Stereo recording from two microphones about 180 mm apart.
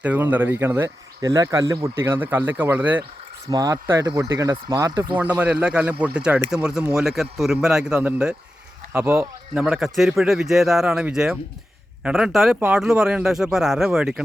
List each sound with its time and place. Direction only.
0.0 s speech: 10° right (ahead or behind)
5.1 s speech: 10° right (ahead or behind)